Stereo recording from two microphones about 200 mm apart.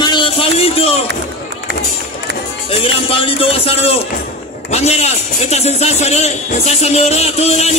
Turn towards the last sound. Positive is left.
turn(degrees=30)  # may be behind; listen again after turning